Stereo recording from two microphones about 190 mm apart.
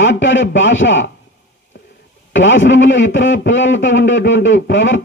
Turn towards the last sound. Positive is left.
turn(degrees=80)